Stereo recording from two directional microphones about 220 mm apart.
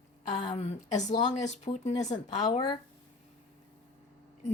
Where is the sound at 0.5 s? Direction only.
30° left (ahead or behind).